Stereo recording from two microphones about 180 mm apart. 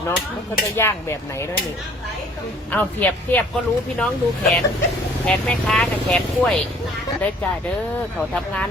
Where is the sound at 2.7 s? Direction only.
10° left (ahead or behind).